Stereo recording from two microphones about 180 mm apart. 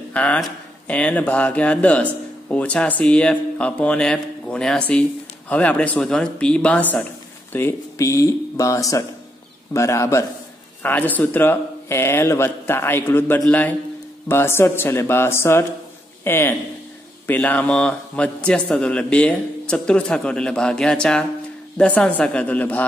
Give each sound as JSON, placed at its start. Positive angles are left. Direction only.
{"t": 0.1, "sound": "speech", "side_deg": 5}